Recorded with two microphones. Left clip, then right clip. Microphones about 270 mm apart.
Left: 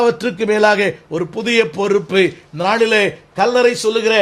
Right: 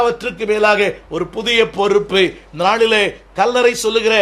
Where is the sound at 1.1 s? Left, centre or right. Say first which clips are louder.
Right 1 dB; left.